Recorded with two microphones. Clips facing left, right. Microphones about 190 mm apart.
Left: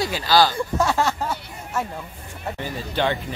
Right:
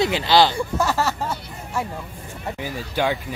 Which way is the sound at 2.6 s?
10° right (ahead or behind).